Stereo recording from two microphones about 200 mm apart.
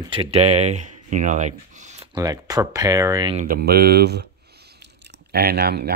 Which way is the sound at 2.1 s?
20° right (ahead or behind).